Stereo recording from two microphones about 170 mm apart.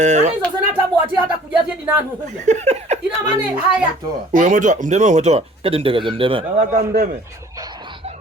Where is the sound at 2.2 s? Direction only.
45° right (ahead or behind).